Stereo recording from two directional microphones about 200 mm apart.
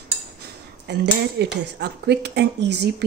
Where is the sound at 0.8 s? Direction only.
60° right (ahead or behind).